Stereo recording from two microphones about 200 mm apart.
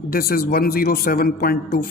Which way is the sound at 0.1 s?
50° left (ahead or behind).